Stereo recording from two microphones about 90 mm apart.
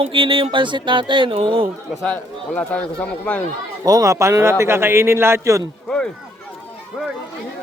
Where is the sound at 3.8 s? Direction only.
40° right (ahead or behind).